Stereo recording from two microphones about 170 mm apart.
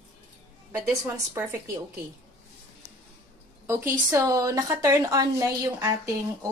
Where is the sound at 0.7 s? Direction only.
15° right (ahead or behind).